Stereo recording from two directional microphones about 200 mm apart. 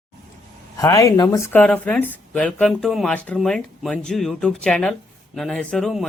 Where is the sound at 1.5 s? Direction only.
5° left (ahead or behind).